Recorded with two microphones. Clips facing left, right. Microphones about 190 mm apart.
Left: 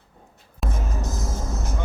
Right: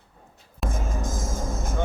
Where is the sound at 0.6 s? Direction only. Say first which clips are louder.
Even; 45° right (ahead or behind).